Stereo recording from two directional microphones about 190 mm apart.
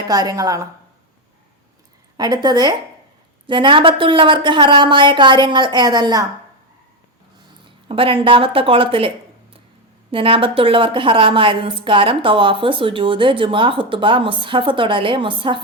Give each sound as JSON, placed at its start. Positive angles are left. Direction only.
{"t": 0.1, "sound": "a woman's voice", "side_deg": -20}
{"t": 2.1, "sound": "a woman's voice", "side_deg": -20}
{"t": 7.9, "sound": "a woman's voice", "side_deg": -30}